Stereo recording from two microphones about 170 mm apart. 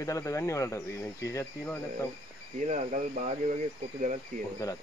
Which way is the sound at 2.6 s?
45° right (ahead or behind).